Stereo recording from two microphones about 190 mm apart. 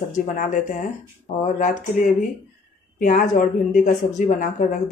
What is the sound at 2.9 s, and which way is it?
Speech, 45° left (ahead or behind).